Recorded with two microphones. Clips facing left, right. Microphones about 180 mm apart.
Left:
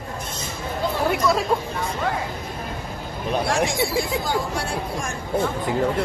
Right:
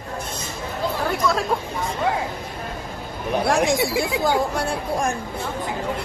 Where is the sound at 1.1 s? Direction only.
5° left (ahead or behind).